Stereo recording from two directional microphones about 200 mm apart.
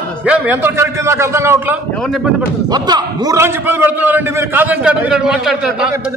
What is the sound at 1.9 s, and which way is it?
Speech, centre (ahead or behind).